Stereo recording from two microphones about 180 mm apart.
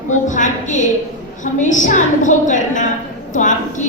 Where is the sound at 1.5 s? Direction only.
45° left (ahead or behind).